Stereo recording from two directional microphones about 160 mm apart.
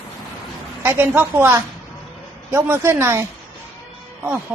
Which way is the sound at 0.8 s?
15° right (ahead or behind).